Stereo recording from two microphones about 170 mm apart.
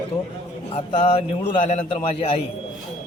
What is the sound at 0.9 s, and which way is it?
Speech, 35° left (ahead or behind).